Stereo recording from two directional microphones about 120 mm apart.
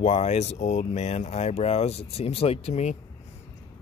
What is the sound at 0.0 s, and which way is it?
Speech, 65° left (ahead or behind).